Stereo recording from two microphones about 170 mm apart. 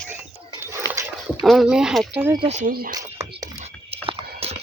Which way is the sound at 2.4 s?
40° right (ahead or behind).